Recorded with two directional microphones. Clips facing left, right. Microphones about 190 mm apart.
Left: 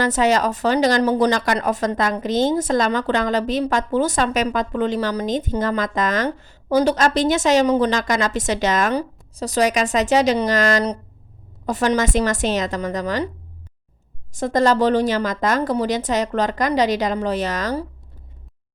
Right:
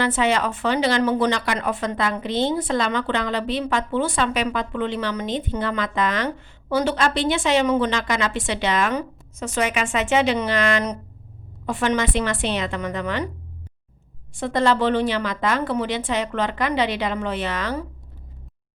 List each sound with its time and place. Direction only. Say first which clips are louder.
0.0 s speech: left 3 dB; 40° left (ahead or behind)
14.3 s speech: left 3 dB; 40° left (ahead or behind)